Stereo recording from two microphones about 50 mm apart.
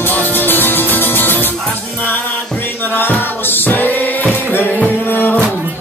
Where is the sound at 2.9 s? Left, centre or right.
Left.